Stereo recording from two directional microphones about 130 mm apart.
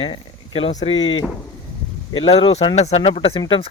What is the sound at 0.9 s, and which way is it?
Speech, 40° left (ahead or behind).